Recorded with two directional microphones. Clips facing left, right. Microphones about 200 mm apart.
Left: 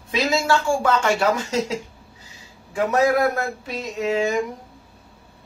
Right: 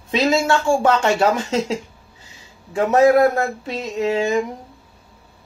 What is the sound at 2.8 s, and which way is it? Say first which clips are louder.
Speech: right 5 dB; 25° right (ahead or behind).